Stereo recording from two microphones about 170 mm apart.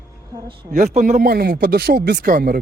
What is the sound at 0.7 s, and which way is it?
Speech, 45° right (ahead or behind).